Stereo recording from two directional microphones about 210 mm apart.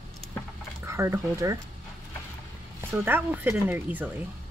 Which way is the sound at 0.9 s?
15° right (ahead or behind).